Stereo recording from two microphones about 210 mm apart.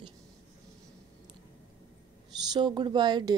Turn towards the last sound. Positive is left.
turn(degrees=-20)  # may be behind; listen again after turning